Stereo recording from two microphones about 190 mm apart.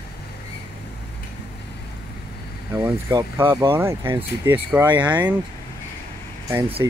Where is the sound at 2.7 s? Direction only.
15° right (ahead or behind).